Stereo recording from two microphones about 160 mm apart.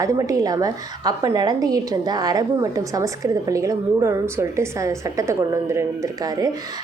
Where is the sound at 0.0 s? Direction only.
20° right (ahead or behind).